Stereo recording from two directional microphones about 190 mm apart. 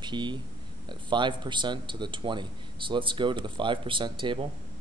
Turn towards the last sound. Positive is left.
turn(degrees=-25)  # may be behind; listen again after turning